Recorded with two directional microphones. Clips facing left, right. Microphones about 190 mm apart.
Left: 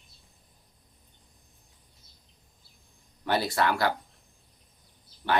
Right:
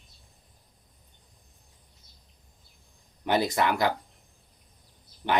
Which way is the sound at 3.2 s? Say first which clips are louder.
Right 2 dB; 20° right (ahead or behind).